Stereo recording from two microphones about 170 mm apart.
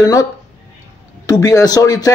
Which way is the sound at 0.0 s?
20° left (ahead or behind).